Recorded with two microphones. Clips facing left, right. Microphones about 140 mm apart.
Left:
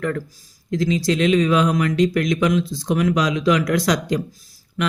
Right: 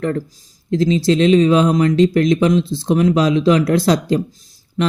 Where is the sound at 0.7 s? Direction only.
30° right (ahead or behind).